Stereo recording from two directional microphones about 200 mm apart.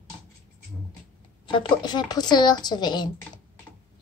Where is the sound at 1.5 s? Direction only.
25° left (ahead or behind).